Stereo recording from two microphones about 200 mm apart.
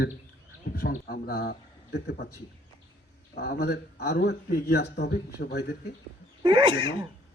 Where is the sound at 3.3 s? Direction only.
50° left (ahead or behind).